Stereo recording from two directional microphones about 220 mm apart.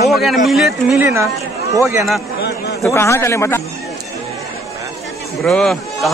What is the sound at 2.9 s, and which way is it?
Speech, 10° left (ahead or behind).